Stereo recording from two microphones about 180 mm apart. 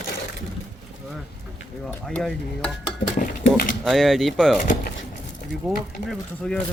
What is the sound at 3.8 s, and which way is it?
Speech, centre (ahead or behind).